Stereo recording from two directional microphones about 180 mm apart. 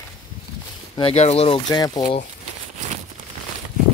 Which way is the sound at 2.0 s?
45° left (ahead or behind).